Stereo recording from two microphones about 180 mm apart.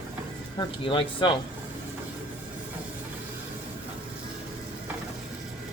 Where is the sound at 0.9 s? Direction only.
30° left (ahead or behind).